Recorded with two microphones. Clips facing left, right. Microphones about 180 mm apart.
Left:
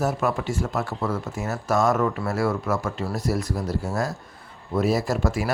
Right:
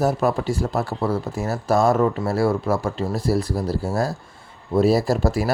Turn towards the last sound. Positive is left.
turn(degrees=-35)  # may be behind; listen again after turning